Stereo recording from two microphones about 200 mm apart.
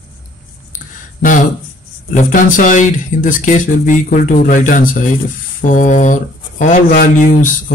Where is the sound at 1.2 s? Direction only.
40° left (ahead or behind).